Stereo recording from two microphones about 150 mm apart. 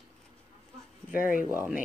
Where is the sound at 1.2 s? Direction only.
70° left (ahead or behind).